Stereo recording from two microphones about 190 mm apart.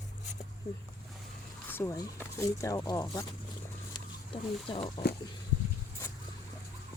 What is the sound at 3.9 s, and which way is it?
Wild animals, 30° left (ahead or behind).